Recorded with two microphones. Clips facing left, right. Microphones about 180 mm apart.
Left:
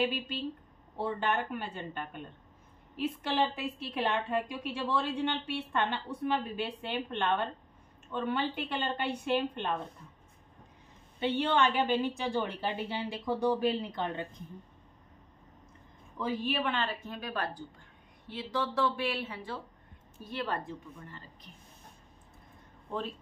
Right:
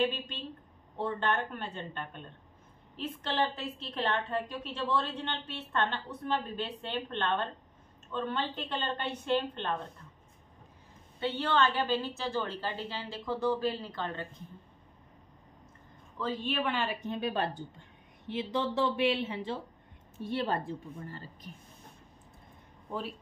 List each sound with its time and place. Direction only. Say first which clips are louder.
0.0 s a woman's voice: even; 10° left (ahead or behind)
11.1 s a woman's voice: left 1 dB; 20° left (ahead or behind)
16.2 s speech: left 1 dB; 10° left (ahead or behind); by 17.1 s 10° right (ahead or behind)
17.1 s a woman's voice: right 4 dB; 25° right (ahead or behind)